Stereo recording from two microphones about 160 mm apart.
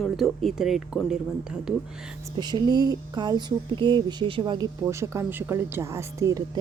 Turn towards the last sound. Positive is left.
turn(degrees=-20)  # may be behind; listen again after turning